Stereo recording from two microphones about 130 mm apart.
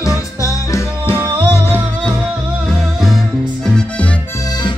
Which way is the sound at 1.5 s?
20° left (ahead or behind).